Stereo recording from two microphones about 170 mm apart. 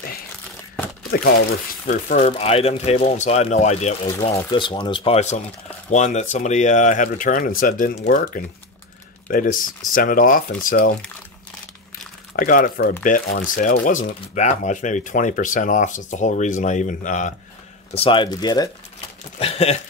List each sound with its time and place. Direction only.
1.1 s speech: 65° left (ahead or behind)
2.2 s speech: 35° left (ahead or behind); by 11.0 s 55° left (ahead or behind)
12.4 s speech: 55° left (ahead or behind)
17.9 s speech: 30° left (ahead or behind)
19.3 s a sound: 35° left (ahead or behind)